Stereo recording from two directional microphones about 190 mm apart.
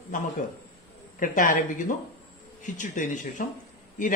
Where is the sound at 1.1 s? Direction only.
45° left (ahead or behind).